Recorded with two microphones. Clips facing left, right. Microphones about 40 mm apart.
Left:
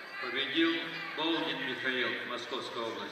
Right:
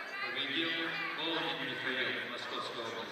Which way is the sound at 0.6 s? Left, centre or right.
Centre.